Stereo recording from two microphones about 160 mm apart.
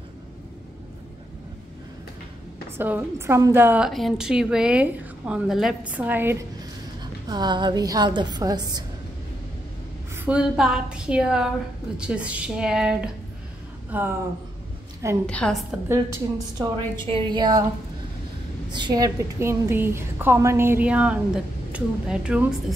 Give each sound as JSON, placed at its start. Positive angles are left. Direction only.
{"t": 2.8, "sound": "a woman's voice", "side_deg": -15}
{"t": 3.9, "sound": "a woman's voice", "side_deg": 0}
{"t": 7.0, "sound": "a woman's voice", "side_deg": -25}
{"t": 10.1, "sound": "a woman's voice", "side_deg": -10}
{"t": 15.2, "sound": "a woman's voice", "side_deg": 5}
{"t": 16.5, "sound": "a woman's voice", "side_deg": -30}
{"t": 18.7, "sound": "a woman's voice", "side_deg": -30}